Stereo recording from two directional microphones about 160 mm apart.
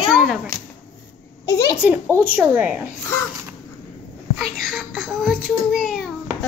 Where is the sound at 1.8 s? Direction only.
10° right (ahead or behind).